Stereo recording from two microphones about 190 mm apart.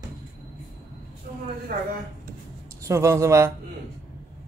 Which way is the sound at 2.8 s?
15° right (ahead or behind).